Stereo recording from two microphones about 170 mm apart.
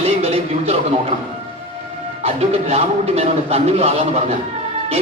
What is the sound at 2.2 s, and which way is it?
Speech, 35° right (ahead or behind).